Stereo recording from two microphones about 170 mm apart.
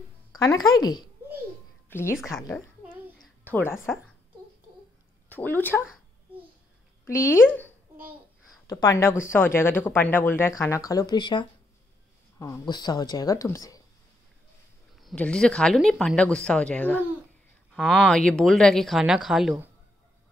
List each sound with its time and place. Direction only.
0.4 s speech: 20° left (ahead or behind)
1.9 s a woman's voice: 15° left (ahead or behind)
3.2 s babbling: 10° left (ahead or behind)
5.3 s speech: 10° left (ahead or behind)
7.2 s speech: 10° left (ahead or behind); by 11.4 s 25° left (ahead or behind)
12.4 s speech: 15° left (ahead or behind)
15.0 s speech: 5° left (ahead or behind)